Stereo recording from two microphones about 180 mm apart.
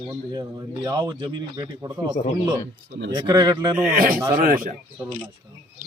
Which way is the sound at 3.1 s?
20° right (ahead or behind).